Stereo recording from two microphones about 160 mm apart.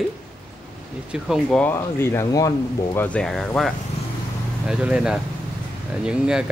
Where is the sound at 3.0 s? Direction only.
5° left (ahead or behind).